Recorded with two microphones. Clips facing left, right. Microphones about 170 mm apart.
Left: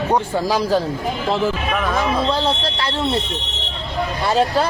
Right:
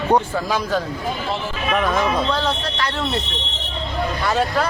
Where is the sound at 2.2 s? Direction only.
30° left (ahead or behind).